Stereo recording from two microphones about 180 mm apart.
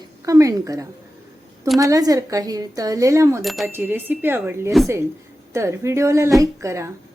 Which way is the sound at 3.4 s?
Centre (ahead or behind).